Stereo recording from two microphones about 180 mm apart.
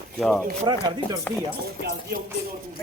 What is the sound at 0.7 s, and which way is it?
Speech, 25° right (ahead or behind).